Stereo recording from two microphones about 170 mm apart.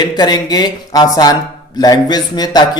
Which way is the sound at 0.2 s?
25° left (ahead or behind).